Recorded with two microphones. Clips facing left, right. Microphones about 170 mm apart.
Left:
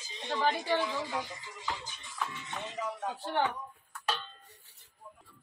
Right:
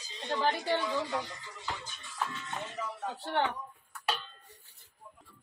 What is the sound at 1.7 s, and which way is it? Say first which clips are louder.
Speech: right 1 dB; 15° left (ahead or behind).